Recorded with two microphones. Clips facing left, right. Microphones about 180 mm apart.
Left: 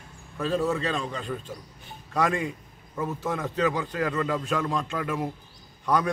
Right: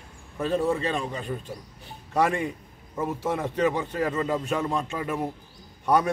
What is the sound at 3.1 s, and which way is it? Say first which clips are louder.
Speech: right 3 dB; 10° right (ahead or behind).